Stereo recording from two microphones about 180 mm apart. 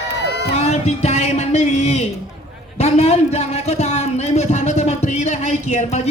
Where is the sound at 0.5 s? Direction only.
35° left (ahead or behind).